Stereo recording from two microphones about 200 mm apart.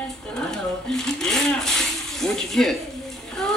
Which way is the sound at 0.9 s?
Centre (ahead or behind).